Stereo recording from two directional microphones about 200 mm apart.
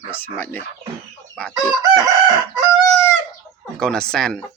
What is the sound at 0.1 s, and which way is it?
Speech, 10° left (ahead or behind).